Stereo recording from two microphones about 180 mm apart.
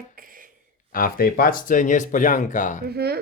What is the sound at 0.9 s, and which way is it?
Speech, 50° left (ahead or behind).